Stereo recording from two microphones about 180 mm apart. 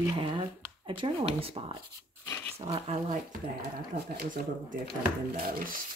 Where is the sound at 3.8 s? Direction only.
50° right (ahead or behind).